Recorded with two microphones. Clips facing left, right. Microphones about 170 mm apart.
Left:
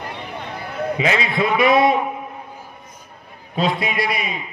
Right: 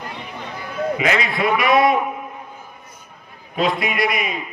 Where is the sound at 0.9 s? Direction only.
25° left (ahead or behind).